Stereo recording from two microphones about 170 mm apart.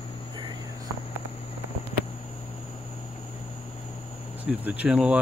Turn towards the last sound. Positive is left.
turn(degrees=-5)  # may be behind; listen again after turning